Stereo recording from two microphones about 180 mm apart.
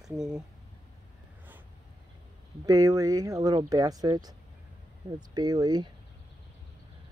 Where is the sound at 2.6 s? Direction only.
20° right (ahead or behind).